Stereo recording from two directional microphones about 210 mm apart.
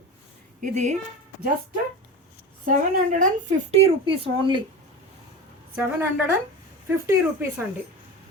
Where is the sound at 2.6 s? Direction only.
40° right (ahead or behind).